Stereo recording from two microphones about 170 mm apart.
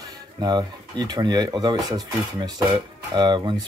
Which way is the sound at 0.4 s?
25° right (ahead or behind).